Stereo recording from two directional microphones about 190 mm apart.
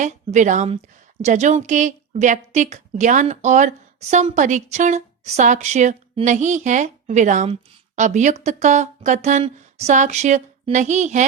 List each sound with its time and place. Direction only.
0.0 s a woman's voice: 40° right (ahead or behind)